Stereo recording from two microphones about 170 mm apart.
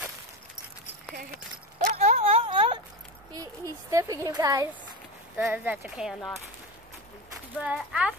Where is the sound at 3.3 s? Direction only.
20° right (ahead or behind); by 6.3 s 5° right (ahead or behind).